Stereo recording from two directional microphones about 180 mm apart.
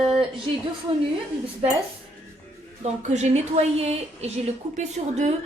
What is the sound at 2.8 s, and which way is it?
A woman's voice, 40° right (ahead or behind).